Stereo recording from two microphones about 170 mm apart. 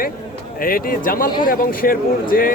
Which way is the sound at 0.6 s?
55° left (ahead or behind).